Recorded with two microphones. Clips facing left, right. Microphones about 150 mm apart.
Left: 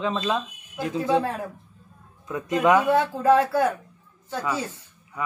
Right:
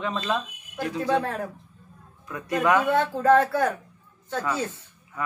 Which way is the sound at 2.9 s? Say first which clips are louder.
Left 1 dB; 10° left (ahead or behind).